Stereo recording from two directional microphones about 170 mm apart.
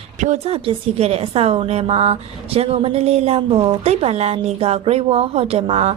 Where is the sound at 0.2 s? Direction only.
40° right (ahead or behind).